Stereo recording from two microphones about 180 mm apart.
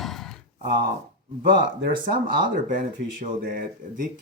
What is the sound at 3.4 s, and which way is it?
Speech, 50° right (ahead or behind).